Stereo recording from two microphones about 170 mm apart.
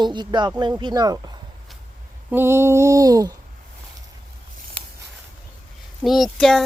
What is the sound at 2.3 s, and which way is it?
Speech, 15° right (ahead or behind).